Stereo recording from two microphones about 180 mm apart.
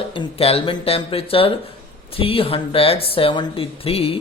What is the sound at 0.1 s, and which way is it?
Speech, 30° left (ahead or behind).